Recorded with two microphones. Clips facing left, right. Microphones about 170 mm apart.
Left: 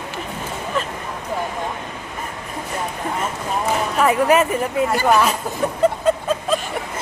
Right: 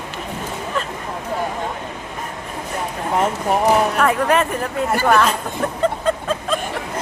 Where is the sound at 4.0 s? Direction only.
5° left (ahead or behind).